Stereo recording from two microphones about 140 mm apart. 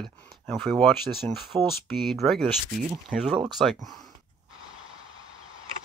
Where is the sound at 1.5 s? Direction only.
35° right (ahead or behind).